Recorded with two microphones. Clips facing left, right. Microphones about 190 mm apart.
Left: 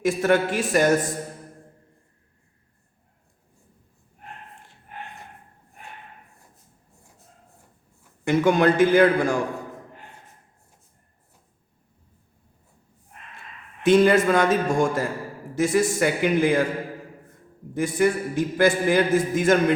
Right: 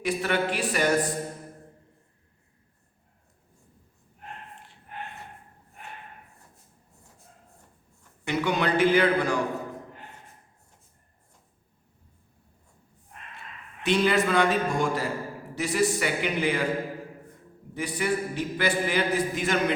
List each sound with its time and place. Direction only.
0.0 s a man's voice: 45° left (ahead or behind)
8.2 s a man's voice: 50° left (ahead or behind)
13.8 s a man's voice: 45° left (ahead or behind)
17.7 s a man's voice: 50° left (ahead or behind)